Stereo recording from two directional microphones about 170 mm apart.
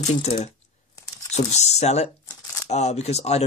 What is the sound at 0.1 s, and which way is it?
Speech, 40° left (ahead or behind).